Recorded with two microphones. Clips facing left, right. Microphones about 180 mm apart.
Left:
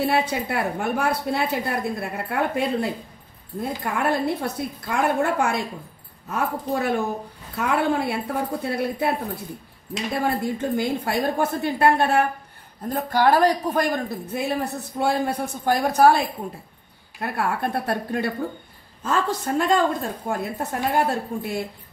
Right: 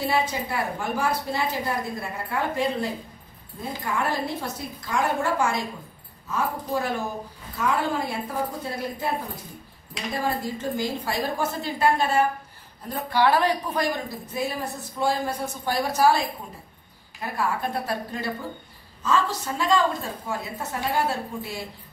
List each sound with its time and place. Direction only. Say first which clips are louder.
0.1 s a woman's voice: left 3 dB; 60° left (ahead or behind)
10.1 s a woman's voice: left 3 dB; 60° left (ahead or behind)
12.9 s a woman's voice: left 2 dB; 45° left (ahead or behind)